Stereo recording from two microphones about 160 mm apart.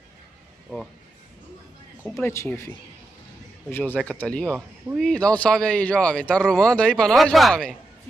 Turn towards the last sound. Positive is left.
turn(degrees=5)  # may be behind; listen again after turning